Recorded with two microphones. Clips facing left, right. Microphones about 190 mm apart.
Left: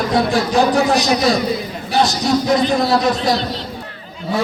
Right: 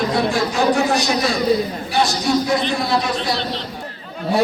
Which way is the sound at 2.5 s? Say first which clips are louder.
Left 4 dB; 40° left (ahead or behind).